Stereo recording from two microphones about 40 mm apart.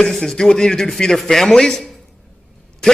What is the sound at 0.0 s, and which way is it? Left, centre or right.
A man's voice, centre.